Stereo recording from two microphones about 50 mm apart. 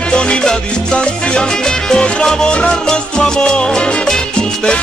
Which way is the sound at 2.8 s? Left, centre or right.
Centre.